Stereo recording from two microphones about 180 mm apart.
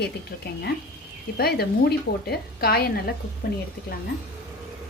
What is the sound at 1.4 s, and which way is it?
A woman's voice, 60° left (ahead or behind).